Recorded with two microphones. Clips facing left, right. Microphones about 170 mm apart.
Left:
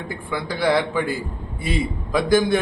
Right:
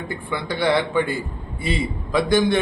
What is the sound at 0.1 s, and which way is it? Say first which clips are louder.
A man's voice: even; centre (ahead or behind).